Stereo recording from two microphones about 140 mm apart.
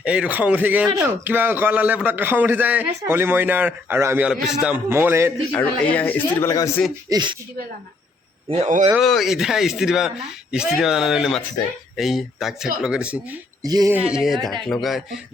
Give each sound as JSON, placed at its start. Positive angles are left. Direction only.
{"t": 0.0, "sound": "a man's voice", "side_deg": -10}
{"t": 4.3, "sound": "speech", "side_deg": -5}
{"t": 4.9, "sound": "a man's voice", "side_deg": -15}
{"t": 5.5, "sound": "speech", "side_deg": 10}
{"t": 7.1, "sound": "speech", "side_deg": -30}
{"t": 8.4, "sound": "a man's voice", "side_deg": -50}
{"t": 8.9, "sound": "speech", "side_deg": 0}
{"t": 13.6, "sound": "speech", "side_deg": -25}
{"t": 13.9, "sound": "speech", "side_deg": -5}